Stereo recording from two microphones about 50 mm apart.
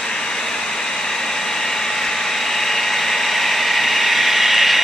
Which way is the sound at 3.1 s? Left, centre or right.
Centre.